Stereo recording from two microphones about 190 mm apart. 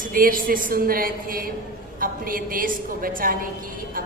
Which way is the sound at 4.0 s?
45° right (ahead or behind).